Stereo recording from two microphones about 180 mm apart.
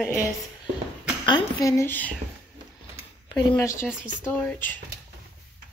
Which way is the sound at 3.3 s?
15° left (ahead or behind).